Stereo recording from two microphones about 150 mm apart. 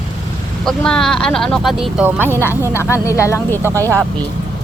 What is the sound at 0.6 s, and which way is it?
Speech, 5° left (ahead or behind).